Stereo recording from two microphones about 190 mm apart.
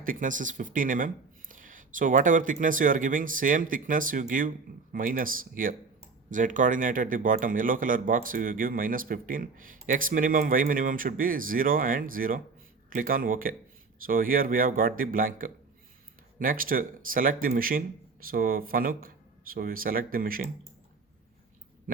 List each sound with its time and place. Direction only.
0.0 s speech: 45° right (ahead or behind)